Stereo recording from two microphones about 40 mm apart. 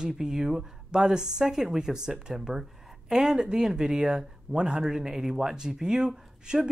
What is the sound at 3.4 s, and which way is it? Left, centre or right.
Speech, right.